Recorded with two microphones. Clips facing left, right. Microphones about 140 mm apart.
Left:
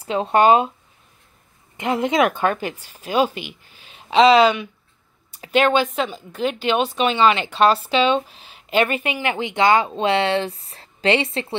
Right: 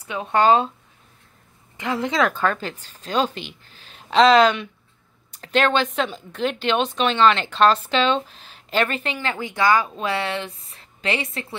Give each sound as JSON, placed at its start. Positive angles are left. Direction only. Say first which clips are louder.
{"t": 0.0, "sound": "speech", "louder": "left 5 dB", "side_deg": 30}
{"t": 0.4, "sound": "a woman's voice", "louder": "left 2 dB", "side_deg": 15}
{"t": 1.8, "sound": "a woman's voice", "louder": "left 3 dB", "side_deg": 20}